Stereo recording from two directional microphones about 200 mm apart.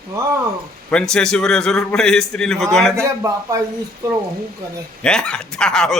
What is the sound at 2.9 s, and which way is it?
Speech, 15° right (ahead or behind).